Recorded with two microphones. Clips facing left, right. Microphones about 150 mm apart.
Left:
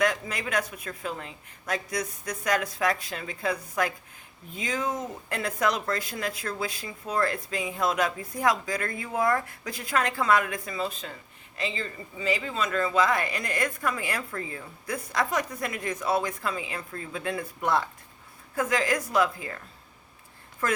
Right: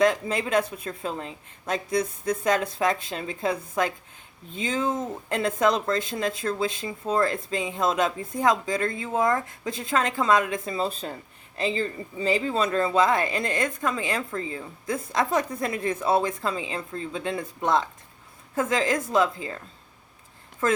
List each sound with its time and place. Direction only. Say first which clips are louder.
0.0 s speech: right 5 dB; 25° right (ahead or behind)
20.6 s speech: right 5 dB; 20° right (ahead or behind)